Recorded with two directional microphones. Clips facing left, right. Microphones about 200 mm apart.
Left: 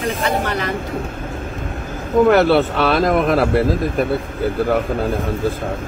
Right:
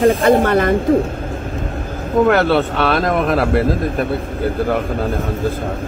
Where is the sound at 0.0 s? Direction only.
50° right (ahead or behind).